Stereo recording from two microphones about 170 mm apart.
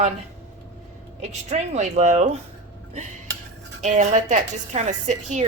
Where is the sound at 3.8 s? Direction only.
45° right (ahead or behind).